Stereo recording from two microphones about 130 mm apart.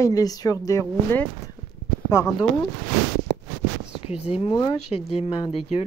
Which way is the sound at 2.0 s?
25° left (ahead or behind).